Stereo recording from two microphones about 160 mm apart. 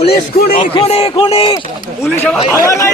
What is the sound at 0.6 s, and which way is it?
Speech, 35° left (ahead or behind).